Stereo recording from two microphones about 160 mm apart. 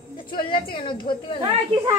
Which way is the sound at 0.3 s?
30° left (ahead or behind).